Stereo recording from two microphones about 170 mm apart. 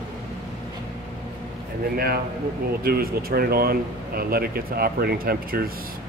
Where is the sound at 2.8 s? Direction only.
60° right (ahead or behind).